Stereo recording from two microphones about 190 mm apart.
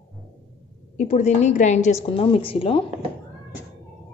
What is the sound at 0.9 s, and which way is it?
A woman's voice, 40° left (ahead or behind).